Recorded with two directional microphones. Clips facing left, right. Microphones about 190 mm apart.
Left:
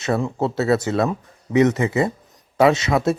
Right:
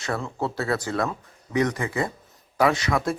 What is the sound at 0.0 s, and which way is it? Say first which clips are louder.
Speech: left 7 dB; 25° left (ahead or behind).